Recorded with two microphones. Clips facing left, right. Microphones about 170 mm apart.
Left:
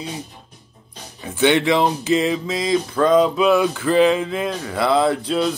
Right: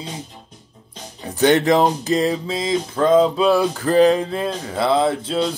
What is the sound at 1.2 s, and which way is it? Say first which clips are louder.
Speech: right 1 dB; 40° right (ahead or behind).